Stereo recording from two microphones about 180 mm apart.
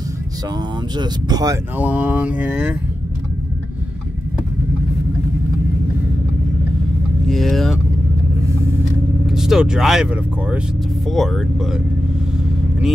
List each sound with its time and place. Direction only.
0.6 s speech: 25° right (ahead or behind)
1.8 s mantra: 10° right (ahead or behind)
7.2 s vehicle: centre (ahead or behind)
9.2 s speech: centre (ahead or behind)